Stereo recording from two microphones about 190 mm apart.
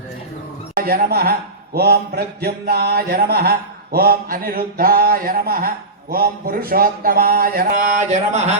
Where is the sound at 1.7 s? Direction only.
55° right (ahead or behind); by 8.5 s 40° right (ahead or behind).